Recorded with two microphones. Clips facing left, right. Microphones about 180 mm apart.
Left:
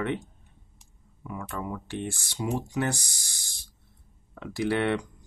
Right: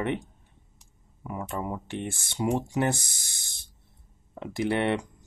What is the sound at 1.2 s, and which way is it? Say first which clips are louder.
Speech: right 2 dB; 25° right (ahead or behind).